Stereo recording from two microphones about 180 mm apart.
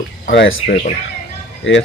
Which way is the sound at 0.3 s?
80° left.